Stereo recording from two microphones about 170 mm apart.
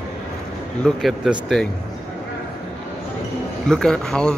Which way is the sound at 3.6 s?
5° left (ahead or behind).